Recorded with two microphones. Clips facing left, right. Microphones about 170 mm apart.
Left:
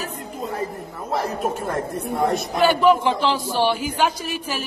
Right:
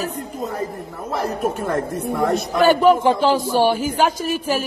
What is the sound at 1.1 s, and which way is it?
Speech, 55° right (ahead or behind).